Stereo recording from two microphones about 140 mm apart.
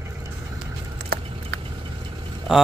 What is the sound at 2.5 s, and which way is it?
Speech, 5° right (ahead or behind).